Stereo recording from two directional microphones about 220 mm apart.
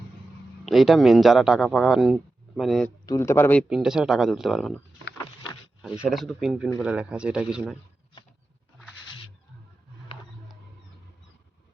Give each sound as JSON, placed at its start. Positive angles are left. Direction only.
{"t": 0.6, "sound": "speech", "side_deg": 0}
{"t": 3.1, "sound": "a man's voice", "side_deg": 10}
{"t": 3.7, "sound": "speech", "side_deg": -5}
{"t": 6.1, "sound": "speech", "side_deg": 0}